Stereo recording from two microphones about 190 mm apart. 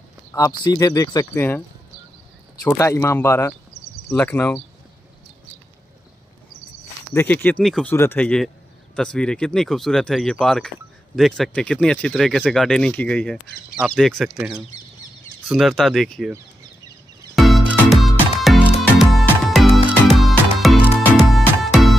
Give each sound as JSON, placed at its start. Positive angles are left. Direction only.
{"t": 0.3, "sound": "speech", "side_deg": 20}
{"t": 2.6, "sound": "speech", "side_deg": 15}
{"t": 7.2, "sound": "speech", "side_deg": 10}
{"t": 17.4, "sound": "music", "side_deg": 0}